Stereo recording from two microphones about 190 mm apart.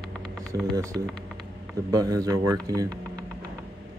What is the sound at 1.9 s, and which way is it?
Speech, 20° right (ahead or behind).